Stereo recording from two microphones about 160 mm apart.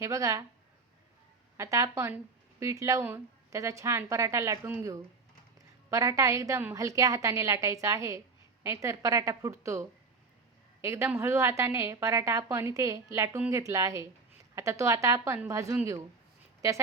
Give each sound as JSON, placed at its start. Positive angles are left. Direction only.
{"t": 0.0, "sound": "a woman's voice", "side_deg": -20}
{"t": 1.5, "sound": "a woman's voice", "side_deg": -20}